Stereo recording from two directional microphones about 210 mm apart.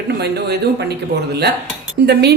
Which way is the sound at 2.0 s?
55° right (ahead or behind).